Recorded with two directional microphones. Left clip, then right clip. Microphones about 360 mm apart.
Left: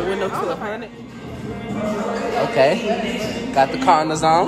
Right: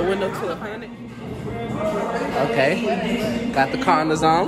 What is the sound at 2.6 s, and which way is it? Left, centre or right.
Speech, centre.